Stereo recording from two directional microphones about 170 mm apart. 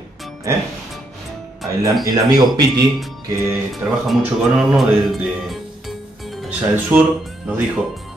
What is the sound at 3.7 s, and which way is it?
Speech, centre (ahead or behind).